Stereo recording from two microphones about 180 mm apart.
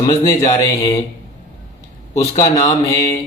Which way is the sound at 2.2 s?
20° left (ahead or behind).